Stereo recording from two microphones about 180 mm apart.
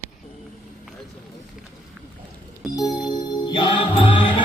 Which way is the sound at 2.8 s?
20° left (ahead or behind).